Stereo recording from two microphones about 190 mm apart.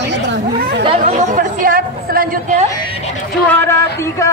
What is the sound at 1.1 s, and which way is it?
Chatter, 40° right (ahead or behind).